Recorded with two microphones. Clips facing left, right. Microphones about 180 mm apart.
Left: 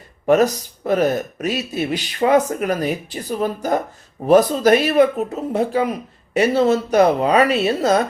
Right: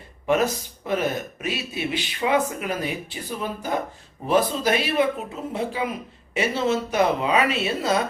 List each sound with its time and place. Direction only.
0.3 s speech: 40° left (ahead or behind)